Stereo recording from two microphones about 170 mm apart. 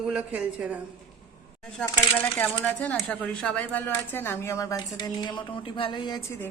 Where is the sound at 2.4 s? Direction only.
10° left (ahead or behind).